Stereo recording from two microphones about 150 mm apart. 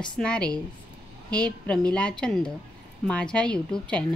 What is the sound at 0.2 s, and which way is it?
A woman's voice, 5° left (ahead or behind).